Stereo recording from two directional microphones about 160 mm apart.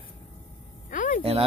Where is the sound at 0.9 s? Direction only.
55° left (ahead or behind).